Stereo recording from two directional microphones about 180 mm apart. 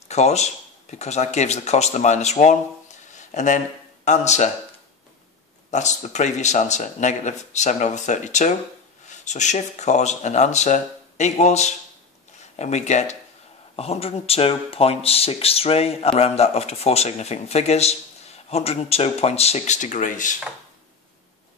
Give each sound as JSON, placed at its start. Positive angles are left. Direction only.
{"t": 0.1, "sound": "a man's voice", "side_deg": 40}
{"t": 5.7, "sound": "speech", "side_deg": 40}